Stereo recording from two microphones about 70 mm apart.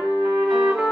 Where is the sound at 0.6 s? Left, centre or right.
Centre.